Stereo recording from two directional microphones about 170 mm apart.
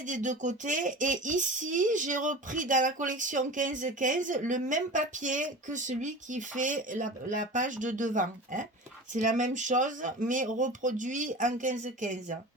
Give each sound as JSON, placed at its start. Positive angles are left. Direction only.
{"t": 0.1, "sound": "speech", "side_deg": -45}